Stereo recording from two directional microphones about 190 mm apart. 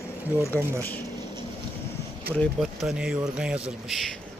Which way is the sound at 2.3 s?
5° left (ahead or behind).